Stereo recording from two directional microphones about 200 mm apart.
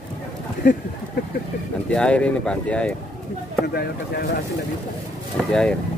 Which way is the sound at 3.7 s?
50° left (ahead or behind).